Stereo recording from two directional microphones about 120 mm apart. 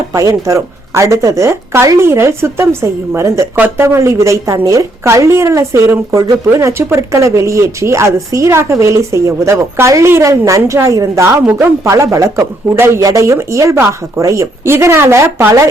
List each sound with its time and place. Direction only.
0.1 s speech: 25° right (ahead or behind)